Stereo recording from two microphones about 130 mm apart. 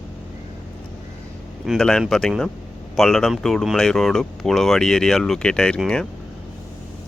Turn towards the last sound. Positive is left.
turn(degrees=5)  # may be behind; listen again after turning